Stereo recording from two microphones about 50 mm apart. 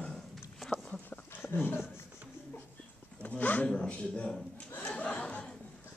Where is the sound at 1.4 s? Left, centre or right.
Left.